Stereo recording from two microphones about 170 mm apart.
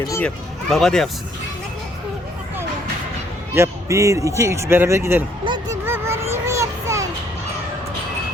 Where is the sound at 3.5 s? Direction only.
15° right (ahead or behind).